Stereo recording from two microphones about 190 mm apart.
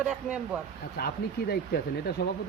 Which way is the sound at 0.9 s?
55° left (ahead or behind).